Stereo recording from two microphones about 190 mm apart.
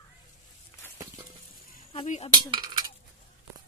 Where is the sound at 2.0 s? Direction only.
35° left (ahead or behind).